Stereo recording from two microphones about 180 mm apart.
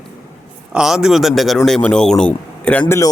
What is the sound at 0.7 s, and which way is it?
A man's voice, 5° right (ahead or behind).